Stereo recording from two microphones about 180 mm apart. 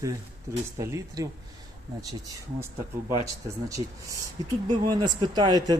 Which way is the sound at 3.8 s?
30° right (ahead or behind).